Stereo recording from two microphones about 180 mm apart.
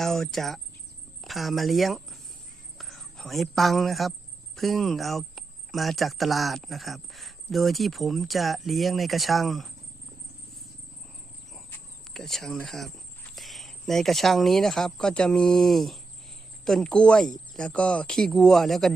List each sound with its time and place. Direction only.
0.0 s speech: centre (ahead or behind)
12.1 s speech: centre (ahead or behind)